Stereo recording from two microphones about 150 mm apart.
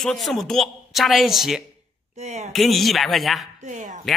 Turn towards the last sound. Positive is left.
turn(degrees=-55)  # may be behind; listen again after turning